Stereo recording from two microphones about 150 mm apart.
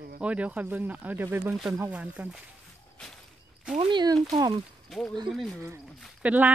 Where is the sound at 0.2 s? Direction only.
10° right (ahead or behind).